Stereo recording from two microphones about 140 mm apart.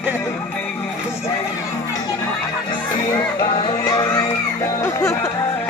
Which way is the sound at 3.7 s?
25° left (ahead or behind).